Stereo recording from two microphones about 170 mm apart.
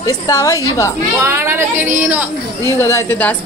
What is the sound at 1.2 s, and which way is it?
A woman's voice, 15° right (ahead or behind).